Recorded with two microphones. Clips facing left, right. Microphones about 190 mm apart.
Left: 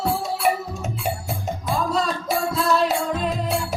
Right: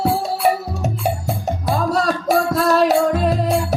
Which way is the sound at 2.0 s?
75° right (ahead or behind).